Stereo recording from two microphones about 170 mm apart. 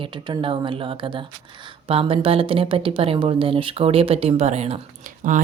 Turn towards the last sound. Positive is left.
turn(degrees=-50)  # may be behind; listen again after turning